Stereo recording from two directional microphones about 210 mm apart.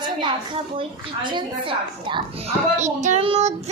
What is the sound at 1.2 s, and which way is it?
A woman's voice, 20° right (ahead or behind).